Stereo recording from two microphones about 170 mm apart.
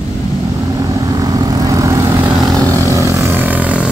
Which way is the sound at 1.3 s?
20° right (ahead or behind).